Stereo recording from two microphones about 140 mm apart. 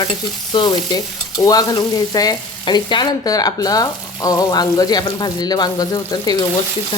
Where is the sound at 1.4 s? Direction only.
25° left (ahead or behind).